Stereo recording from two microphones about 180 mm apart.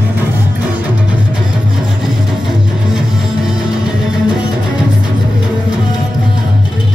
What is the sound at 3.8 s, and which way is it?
Music, 5° right (ahead or behind).